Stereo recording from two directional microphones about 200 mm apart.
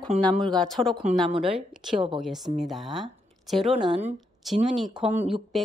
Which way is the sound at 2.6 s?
Centre (ahead or behind).